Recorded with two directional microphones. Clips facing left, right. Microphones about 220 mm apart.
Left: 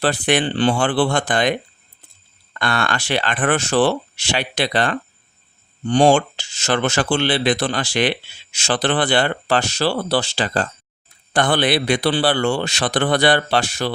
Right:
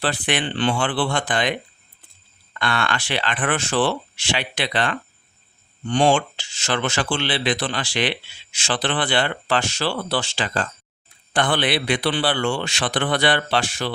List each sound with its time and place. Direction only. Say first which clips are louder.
0.0 s a man's voice: left 5 dB; 40° left (ahead or behind)